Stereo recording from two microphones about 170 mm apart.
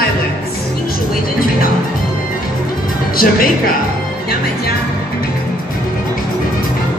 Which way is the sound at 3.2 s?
60° left (ahead or behind).